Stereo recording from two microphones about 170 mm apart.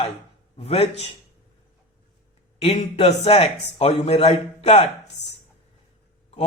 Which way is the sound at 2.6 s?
35° left (ahead or behind).